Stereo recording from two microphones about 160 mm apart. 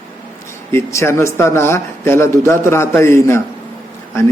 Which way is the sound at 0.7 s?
15° left (ahead or behind).